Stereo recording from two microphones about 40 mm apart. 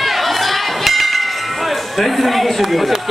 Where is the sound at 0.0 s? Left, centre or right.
Centre.